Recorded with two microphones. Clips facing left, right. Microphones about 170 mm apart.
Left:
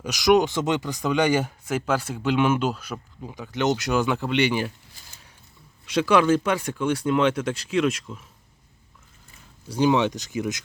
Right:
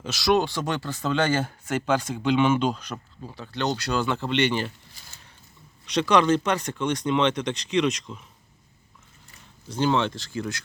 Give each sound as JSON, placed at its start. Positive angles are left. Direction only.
{"t": 0.0, "sound": "speech", "side_deg": 15}
{"t": 5.8, "sound": "speech", "side_deg": 5}
{"t": 9.6, "sound": "speech", "side_deg": 10}